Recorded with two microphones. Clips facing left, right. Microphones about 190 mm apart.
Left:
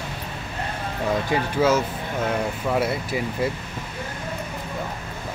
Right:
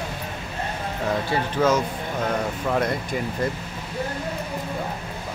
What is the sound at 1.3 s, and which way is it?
Speech, 10° left (ahead or behind).